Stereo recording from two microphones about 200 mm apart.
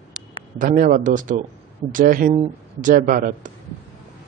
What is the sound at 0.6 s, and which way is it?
A man's voice, 40° right (ahead or behind).